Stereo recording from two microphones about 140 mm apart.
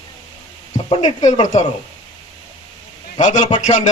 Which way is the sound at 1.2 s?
55° left (ahead or behind).